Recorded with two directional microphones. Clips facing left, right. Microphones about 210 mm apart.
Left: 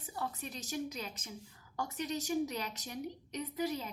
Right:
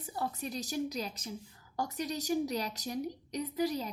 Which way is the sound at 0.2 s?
40° right (ahead or behind).